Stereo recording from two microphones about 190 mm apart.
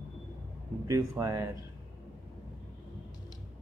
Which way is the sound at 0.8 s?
15° right (ahead or behind).